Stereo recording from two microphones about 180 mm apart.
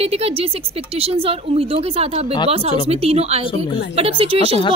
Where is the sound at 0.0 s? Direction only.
30° right (ahead or behind).